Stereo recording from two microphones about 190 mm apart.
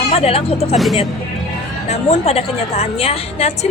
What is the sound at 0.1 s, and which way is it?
Speech, 30° left (ahead or behind).